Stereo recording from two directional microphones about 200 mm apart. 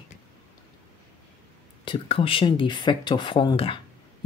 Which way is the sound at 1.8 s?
25° left (ahead or behind).